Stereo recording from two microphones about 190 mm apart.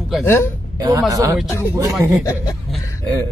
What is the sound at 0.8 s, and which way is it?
Speech, 20° right (ahead or behind).